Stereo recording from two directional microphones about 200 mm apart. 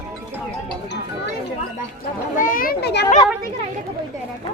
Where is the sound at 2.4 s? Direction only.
45° left (ahead or behind).